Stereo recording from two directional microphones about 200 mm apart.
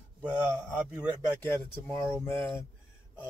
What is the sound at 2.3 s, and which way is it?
Speech, 15° left (ahead or behind).